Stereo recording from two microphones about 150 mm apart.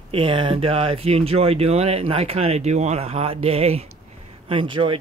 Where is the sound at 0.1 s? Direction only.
35° right (ahead or behind).